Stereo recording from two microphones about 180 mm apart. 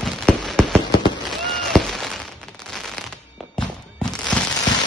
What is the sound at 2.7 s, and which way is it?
Fireworks, centre (ahead or behind).